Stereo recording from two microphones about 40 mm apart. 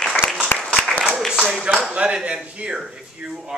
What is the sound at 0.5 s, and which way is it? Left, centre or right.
Applause, left.